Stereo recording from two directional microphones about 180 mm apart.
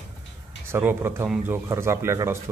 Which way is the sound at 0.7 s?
15° right (ahead or behind).